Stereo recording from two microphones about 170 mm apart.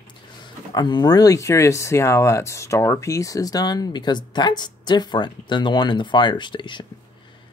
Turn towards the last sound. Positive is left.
turn(degrees=30)  # may be behind; listen again after turning